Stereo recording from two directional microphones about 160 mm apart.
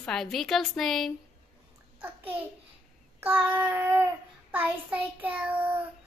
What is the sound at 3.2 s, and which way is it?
Child singing, 10° right (ahead or behind).